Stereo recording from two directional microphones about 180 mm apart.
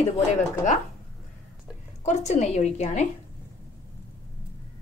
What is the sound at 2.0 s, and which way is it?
A woman's voice, 40° left (ahead or behind).